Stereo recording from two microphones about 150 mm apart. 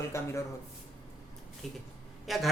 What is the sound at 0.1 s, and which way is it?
Speech, 20° left (ahead or behind).